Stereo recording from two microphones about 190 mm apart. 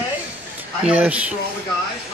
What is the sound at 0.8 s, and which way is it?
Speech, 5° right (ahead or behind).